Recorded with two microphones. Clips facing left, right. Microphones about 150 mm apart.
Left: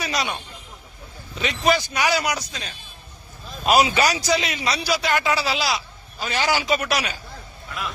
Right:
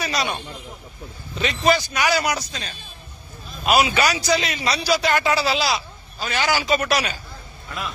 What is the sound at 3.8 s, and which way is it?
Speech, 35° left (ahead or behind).